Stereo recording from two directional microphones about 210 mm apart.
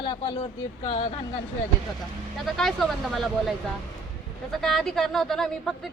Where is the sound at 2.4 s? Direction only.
Centre (ahead or behind).